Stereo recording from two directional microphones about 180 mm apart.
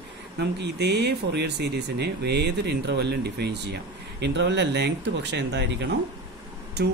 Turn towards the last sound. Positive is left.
turn(degrees=-70)  # may be behind; listen again after turning